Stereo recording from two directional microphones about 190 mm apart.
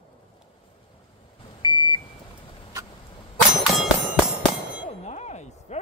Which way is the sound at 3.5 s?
Centre (ahead or behind).